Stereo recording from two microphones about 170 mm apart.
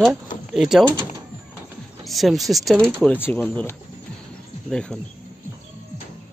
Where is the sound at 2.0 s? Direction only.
Centre (ahead or behind).